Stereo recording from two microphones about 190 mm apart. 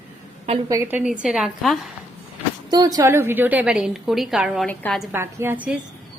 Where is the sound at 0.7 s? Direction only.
10° right (ahead or behind).